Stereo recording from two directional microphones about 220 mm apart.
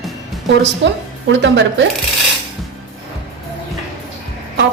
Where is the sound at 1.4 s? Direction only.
55° right (ahead or behind).